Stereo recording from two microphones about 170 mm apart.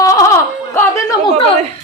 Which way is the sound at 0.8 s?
15° left (ahead or behind).